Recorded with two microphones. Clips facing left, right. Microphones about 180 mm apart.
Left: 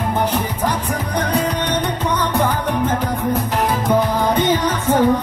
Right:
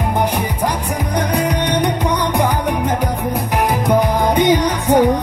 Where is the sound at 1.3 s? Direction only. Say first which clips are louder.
Right 1 dB; 15° right (ahead or behind).